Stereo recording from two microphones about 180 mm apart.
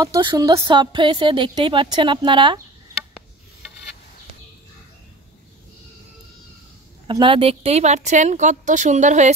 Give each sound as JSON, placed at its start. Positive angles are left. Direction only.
{"t": 0.0, "sound": "a woman's voice", "side_deg": -25}
{"t": 7.1, "sound": "a woman's voice", "side_deg": -30}